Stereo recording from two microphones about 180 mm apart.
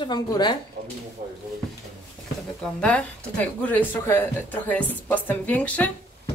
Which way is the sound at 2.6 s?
5° left (ahead or behind).